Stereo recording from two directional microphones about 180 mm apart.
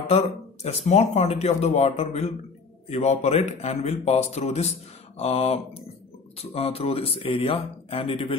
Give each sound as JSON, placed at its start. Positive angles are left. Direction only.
{"t": 0.1, "sound": "speech", "side_deg": 35}